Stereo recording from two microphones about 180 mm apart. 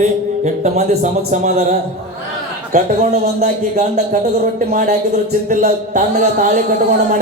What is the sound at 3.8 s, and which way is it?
Speech, 40° right (ahead or behind).